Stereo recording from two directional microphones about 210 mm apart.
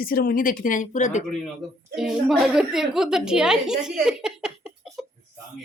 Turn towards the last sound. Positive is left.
turn(degrees=-5)  # may be behind; listen again after turning